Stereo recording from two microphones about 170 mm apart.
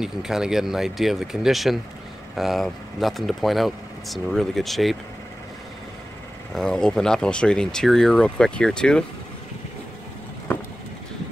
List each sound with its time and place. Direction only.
0.0 s speech: 5° right (ahead or behind)
6.5 s speech: 5° left (ahead or behind)